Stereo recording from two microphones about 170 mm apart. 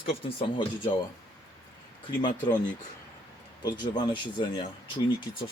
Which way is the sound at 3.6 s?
25° left (ahead or behind).